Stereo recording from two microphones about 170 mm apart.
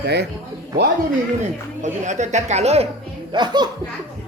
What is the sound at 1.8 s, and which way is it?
A woman's voice, 45° right (ahead or behind).